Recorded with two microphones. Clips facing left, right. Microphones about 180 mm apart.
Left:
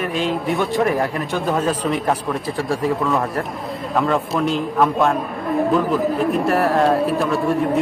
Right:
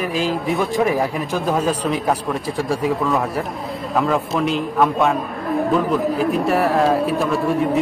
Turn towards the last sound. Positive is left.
turn(degrees=0)  # may be behind; listen again after turning